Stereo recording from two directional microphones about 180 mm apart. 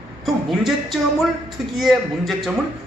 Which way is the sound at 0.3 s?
Centre (ahead or behind).